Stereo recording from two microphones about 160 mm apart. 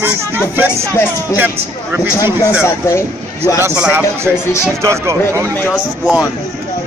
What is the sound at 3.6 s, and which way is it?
Speech, 15° right (ahead or behind).